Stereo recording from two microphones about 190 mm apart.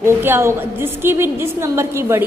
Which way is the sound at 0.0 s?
10° right (ahead or behind).